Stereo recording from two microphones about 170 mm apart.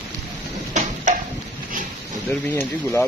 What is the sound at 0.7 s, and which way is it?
Tick-tock, 45° right (ahead or behind).